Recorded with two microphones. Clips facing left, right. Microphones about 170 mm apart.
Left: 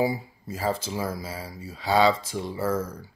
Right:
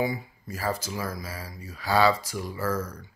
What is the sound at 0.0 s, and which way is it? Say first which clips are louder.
Speech: left 3 dB; 30° left (ahead or behind).